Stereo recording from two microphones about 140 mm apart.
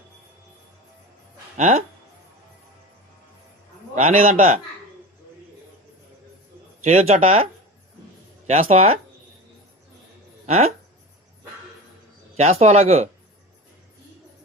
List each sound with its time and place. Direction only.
1.5 s speech: 55° right (ahead or behind)
3.9 s a man's voice: 60° right (ahead or behind)
6.8 s speech: 50° right (ahead or behind)
8.4 s speech: 50° right (ahead or behind)
10.4 s speech: 50° right (ahead or behind)
12.4 s speech: 50° right (ahead or behind)